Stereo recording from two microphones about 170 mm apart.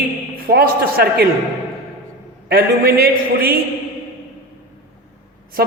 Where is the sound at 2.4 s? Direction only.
65° right (ahead or behind).